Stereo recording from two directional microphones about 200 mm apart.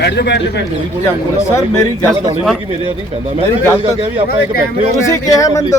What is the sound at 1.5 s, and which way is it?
Speech, 15° left (ahead or behind).